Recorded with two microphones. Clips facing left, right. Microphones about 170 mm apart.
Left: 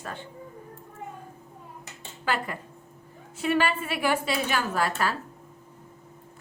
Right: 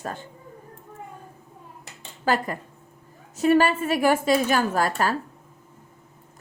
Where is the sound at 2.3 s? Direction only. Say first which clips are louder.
Right 5 dB; 40° right (ahead or behind).